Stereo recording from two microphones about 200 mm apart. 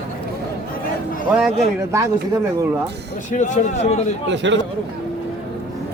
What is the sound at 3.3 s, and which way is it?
Speech, 35° left (ahead or behind).